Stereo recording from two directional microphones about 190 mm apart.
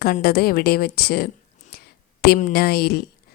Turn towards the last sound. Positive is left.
turn(degrees=55)  # may be behind; listen again after turning